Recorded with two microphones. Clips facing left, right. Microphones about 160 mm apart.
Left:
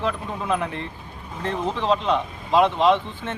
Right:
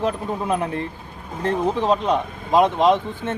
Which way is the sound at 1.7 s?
45° right (ahead or behind).